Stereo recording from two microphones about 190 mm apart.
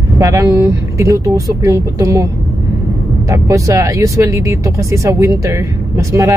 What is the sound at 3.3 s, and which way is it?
Speech, 15° right (ahead or behind).